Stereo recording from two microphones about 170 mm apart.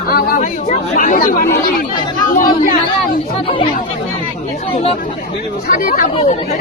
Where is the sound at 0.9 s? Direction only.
55° left (ahead or behind).